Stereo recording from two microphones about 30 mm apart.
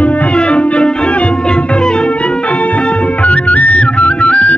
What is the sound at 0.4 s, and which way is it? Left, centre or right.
Music, left.